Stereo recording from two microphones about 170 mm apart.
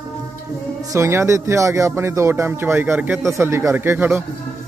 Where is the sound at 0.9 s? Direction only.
15° right (ahead or behind).